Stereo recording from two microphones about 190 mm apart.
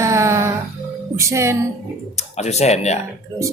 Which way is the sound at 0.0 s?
15° right (ahead or behind).